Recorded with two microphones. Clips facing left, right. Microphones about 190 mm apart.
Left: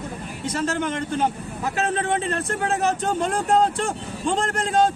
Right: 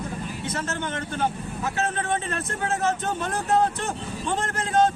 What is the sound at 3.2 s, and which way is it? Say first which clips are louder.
Speech: left 3 dB; 30° left (ahead or behind).